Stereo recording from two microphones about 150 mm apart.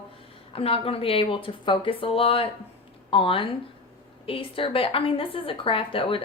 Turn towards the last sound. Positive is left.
turn(degrees=35)  # may be behind; listen again after turning